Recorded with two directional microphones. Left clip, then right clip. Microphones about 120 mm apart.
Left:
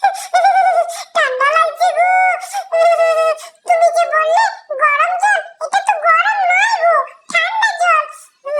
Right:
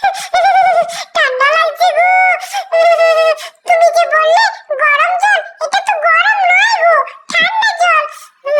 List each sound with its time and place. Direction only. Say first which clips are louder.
0.0 s bird: right 1 dB; 15° right (ahead or behind)
0.3 s a sound: right 3 dB; 15° right (ahead or behind)
6.1 s dog: right 3 dB; 15° right (ahead or behind)
7.0 s wail: right 3 dB; 20° right (ahead or behind)